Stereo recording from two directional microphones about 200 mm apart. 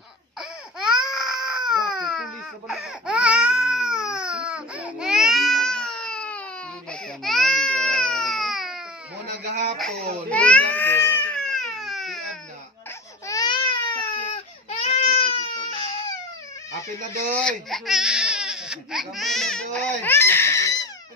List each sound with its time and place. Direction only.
0.4 s baby cry: 5° right (ahead or behind)
10.3 s baby cry: 5° left (ahead or behind)
13.3 s baby cry: 20° left (ahead or behind)
17.4 s speech: 5° left (ahead or behind)